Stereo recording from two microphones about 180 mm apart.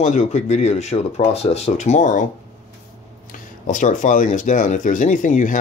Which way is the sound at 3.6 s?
45° left (ahead or behind).